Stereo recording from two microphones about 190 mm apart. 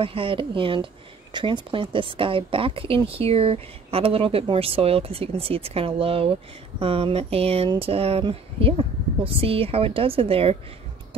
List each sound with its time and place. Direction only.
0.0 s a woman's voice: 30° right (ahead or behind)